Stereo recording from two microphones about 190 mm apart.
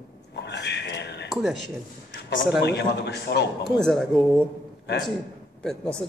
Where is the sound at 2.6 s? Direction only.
60° left (ahead or behind).